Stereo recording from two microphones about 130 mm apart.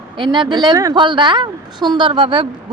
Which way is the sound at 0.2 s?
35° right (ahead or behind).